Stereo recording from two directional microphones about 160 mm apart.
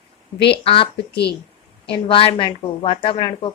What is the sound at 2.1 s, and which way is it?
A woman's voice, 35° left (ahead or behind).